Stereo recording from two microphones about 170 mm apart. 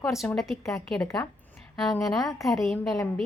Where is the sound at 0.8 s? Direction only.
5° left (ahead or behind).